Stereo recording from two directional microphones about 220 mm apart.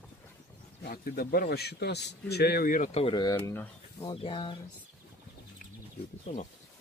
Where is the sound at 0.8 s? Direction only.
45° left (ahead or behind).